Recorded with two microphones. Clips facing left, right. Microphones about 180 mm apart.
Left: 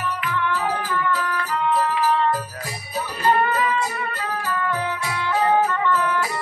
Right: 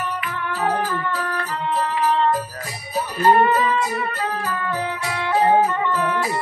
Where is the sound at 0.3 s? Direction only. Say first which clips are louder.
Even; 35° right (ahead or behind).